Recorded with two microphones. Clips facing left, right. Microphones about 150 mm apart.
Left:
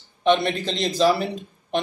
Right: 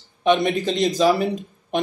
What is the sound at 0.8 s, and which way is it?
Speech, 10° right (ahead or behind).